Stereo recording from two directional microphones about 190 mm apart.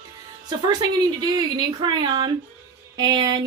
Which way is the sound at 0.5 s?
20° right (ahead or behind).